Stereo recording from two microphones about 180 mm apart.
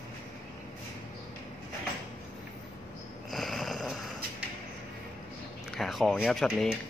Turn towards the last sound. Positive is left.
turn(degrees=0)  # may be behind; listen again after turning